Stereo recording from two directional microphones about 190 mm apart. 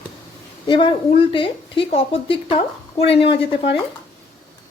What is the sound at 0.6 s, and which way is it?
Speech, 25° left (ahead or behind).